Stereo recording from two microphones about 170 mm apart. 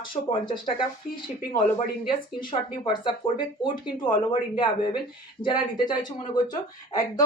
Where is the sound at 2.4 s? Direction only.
25° left (ahead or behind).